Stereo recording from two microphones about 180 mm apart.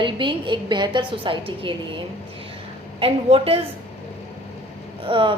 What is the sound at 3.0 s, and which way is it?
Speech, 30° right (ahead or behind).